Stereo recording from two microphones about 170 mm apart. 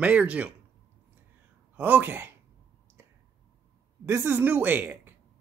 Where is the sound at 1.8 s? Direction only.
10° right (ahead or behind).